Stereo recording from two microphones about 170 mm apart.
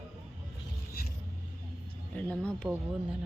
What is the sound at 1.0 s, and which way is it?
Filing, 65° left (ahead or behind).